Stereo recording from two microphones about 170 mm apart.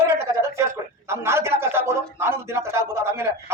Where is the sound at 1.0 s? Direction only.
15° right (ahead or behind).